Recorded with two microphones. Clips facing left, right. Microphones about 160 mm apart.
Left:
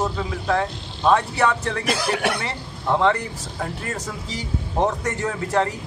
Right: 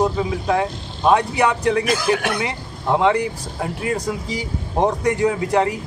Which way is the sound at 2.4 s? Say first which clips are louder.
Right 2 dB; 15° right (ahead or behind).